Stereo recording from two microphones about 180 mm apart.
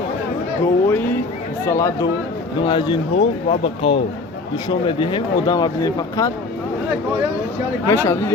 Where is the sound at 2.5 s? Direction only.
25° left (ahead or behind).